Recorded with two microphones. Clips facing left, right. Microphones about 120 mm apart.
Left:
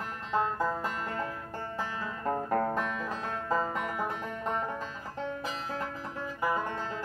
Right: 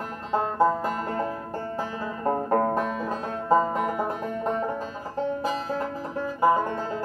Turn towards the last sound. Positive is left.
turn(degrees=-40)  # may be behind; listen again after turning